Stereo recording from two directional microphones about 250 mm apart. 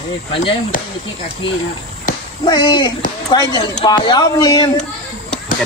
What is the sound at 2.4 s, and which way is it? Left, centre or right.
Speech, centre.